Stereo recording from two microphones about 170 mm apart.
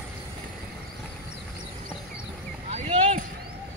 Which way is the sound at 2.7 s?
40° right (ahead or behind).